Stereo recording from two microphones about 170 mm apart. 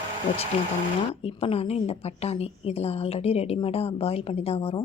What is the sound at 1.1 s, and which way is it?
Speech, 35° left (ahead or behind).